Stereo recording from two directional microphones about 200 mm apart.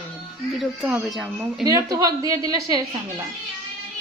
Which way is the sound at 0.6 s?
Centre (ahead or behind).